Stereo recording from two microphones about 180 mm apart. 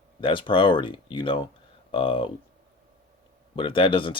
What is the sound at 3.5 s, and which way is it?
Speech, 30° left (ahead or behind).